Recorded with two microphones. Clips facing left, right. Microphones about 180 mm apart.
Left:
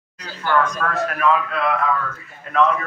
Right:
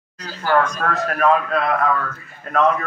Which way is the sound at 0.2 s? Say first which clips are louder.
Right 3 dB; 40° right (ahead or behind).